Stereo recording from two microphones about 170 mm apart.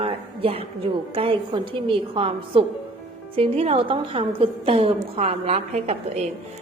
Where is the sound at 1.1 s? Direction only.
35° right (ahead or behind).